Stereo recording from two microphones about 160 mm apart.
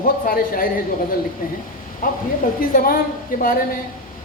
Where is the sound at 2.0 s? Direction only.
60° left (ahead or behind).